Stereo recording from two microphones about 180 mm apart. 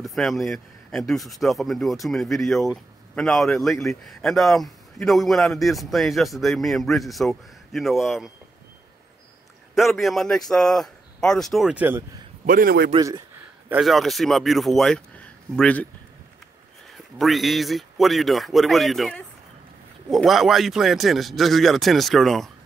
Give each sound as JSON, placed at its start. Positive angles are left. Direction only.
{"t": 0.0, "sound": "speech", "side_deg": 0}
{"t": 9.8, "sound": "speech", "side_deg": 0}
{"t": 12.4, "sound": "a man's voice", "side_deg": -55}
{"t": 12.9, "sound": "speech", "side_deg": -20}
{"t": 13.7, "sound": "speech", "side_deg": 0}
{"t": 17.2, "sound": "speech", "side_deg": 0}